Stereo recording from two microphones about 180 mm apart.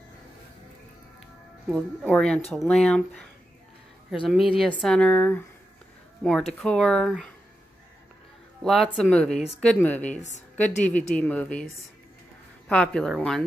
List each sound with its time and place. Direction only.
1.7 s speech: 5° left (ahead or behind)
6.6 s speech: 5° left (ahead or behind)
8.6 s speech: centre (ahead or behind)
10.2 s a woman's voice: 40° left (ahead or behind)
10.8 s speech: 10° left (ahead or behind)